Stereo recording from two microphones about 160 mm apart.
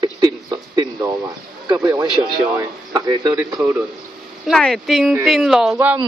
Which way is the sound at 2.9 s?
25° right (ahead or behind).